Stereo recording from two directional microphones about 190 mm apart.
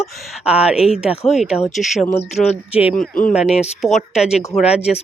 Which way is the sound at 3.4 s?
35° left (ahead or behind).